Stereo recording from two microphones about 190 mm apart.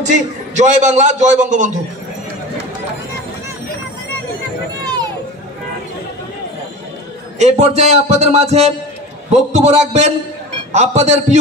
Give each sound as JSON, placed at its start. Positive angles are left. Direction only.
{"t": 0.6, "sound": "a man's voice", "side_deg": -40}
{"t": 4.8, "sound": "a sound", "side_deg": -20}
{"t": 7.3, "sound": "a man's voice", "side_deg": -35}